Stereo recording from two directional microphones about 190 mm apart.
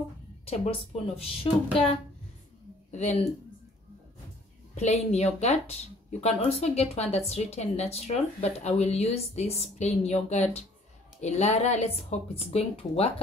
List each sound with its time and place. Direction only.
1.2 s speech: 30° left (ahead or behind)
4.7 s speech: 35° left (ahead or behind)